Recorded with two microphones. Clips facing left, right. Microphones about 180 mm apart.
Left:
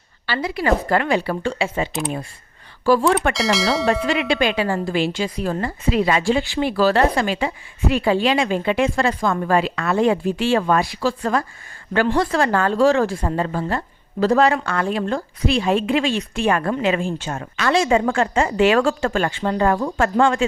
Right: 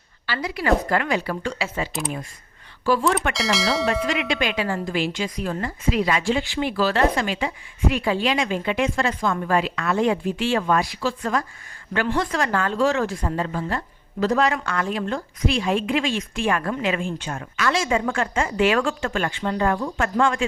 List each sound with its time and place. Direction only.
0.3 s speech: 30° left (ahead or behind)
2.8 s a woman's voice: 40° left (ahead or behind)
3.3 s speech: centre (ahead or behind)
4.0 s a woman's voice: 30° left (ahead or behind)
19.4 s speech: 45° left (ahead or behind)
20.0 s a woman's voice: 30° left (ahead or behind)